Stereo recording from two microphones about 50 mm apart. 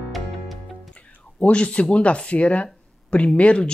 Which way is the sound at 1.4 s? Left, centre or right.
Left.